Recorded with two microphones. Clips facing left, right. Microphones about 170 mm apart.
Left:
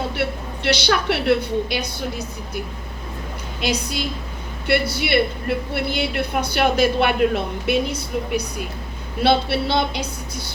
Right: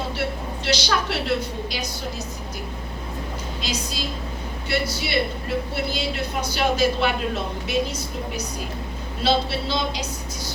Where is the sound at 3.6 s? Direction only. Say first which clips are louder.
Left 7 dB; 60° left (ahead or behind).